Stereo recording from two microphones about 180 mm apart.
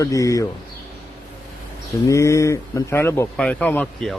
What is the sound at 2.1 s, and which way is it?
Speech, 15° left (ahead or behind).